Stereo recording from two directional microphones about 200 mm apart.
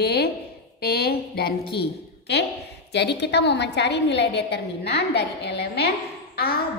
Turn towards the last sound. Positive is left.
turn(degrees=50)  # may be behind; listen again after turning